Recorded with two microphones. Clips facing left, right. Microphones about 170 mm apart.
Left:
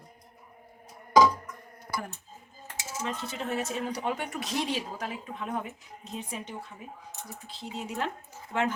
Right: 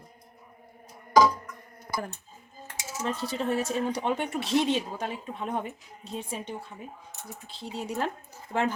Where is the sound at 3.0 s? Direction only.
35° right (ahead or behind).